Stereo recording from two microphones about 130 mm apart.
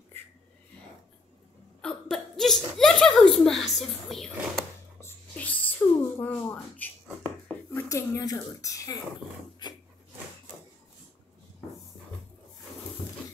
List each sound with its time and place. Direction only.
1.8 s hiccup: 5° left (ahead or behind)
5.0 s a sound: 10° left (ahead or behind)
7.7 s speech: 20° left (ahead or behind)